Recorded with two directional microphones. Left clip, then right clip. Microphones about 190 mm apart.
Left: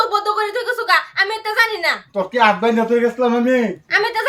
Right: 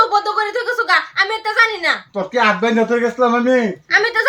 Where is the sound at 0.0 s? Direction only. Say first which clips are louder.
Right 2 dB; centre (ahead or behind).